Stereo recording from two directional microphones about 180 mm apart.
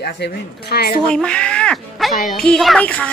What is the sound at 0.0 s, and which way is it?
A woman's voice, 65° left (ahead or behind).